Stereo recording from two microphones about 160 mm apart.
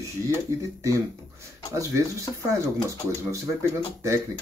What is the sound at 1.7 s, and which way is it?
A man's voice, 20° right (ahead or behind).